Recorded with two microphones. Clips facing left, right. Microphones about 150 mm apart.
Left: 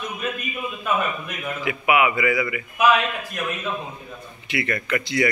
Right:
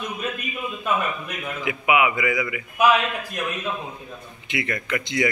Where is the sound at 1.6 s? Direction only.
15° right (ahead or behind).